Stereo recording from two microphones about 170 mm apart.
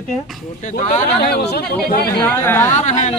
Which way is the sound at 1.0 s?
70° left (ahead or behind).